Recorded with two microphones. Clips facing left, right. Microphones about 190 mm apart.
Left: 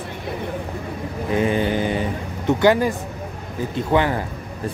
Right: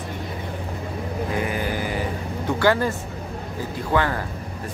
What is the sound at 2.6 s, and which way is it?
Speech, 15° left (ahead or behind).